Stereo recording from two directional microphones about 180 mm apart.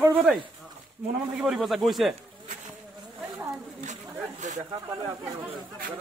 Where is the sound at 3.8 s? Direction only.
40° right (ahead or behind).